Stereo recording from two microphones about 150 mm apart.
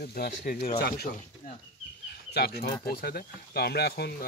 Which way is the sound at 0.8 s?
90° left.